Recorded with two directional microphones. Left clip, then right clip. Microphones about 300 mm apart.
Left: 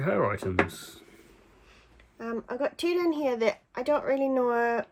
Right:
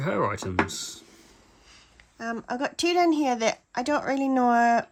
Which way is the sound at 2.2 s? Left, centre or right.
Right.